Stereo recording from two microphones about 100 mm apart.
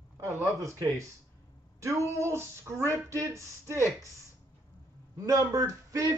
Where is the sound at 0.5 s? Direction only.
35° right (ahead or behind).